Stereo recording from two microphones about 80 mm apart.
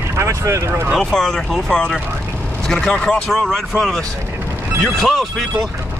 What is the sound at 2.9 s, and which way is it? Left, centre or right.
Speech, centre.